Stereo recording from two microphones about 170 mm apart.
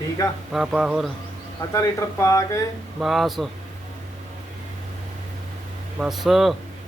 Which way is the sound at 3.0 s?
Centre (ahead or behind).